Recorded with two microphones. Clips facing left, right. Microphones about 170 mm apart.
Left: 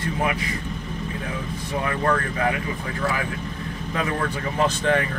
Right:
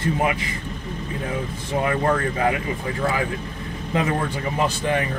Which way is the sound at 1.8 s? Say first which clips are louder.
Right 3 dB; 25° right (ahead or behind).